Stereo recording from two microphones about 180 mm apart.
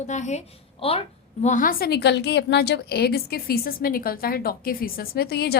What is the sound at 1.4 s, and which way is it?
A woman's voice, 45° left (ahead or behind).